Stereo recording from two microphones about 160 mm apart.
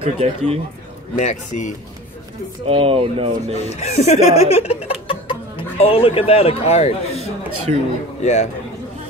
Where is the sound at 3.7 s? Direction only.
45° left (ahead or behind).